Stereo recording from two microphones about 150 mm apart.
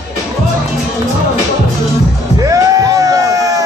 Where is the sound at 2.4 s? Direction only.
20° right (ahead or behind).